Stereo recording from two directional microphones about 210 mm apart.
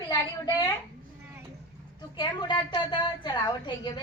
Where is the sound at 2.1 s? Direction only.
20° left (ahead or behind).